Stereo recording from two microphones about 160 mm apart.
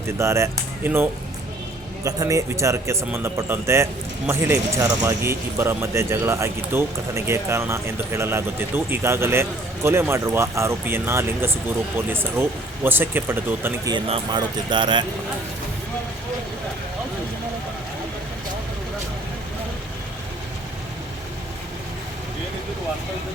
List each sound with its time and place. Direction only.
0.2 s speech: 15° right (ahead or behind)
2.0 s speech: 20° right (ahead or behind)
13.9 s speech: 30° right (ahead or behind)